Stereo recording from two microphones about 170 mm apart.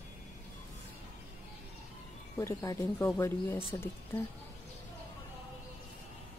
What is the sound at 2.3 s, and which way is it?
Speech, 15° left (ahead or behind).